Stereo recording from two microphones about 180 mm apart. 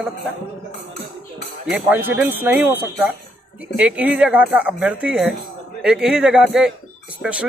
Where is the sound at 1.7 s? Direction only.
5° right (ahead or behind).